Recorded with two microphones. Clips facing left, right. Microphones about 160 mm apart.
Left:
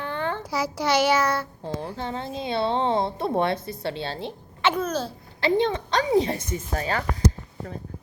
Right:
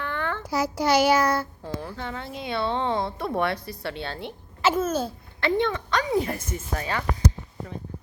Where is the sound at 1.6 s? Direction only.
25° left (ahead or behind).